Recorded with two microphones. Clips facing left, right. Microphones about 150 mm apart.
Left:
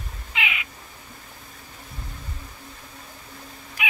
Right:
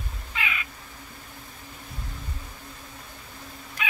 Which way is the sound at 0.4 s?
15° left (ahead or behind).